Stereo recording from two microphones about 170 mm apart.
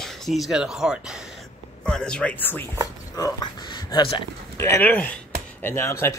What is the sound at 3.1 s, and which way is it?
Speech, 25° left (ahead or behind).